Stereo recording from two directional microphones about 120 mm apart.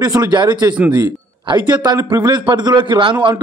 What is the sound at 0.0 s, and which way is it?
Speech, 30° right (ahead or behind).